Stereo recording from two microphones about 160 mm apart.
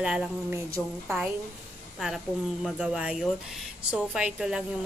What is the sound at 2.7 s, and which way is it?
Speech, 5° right (ahead or behind).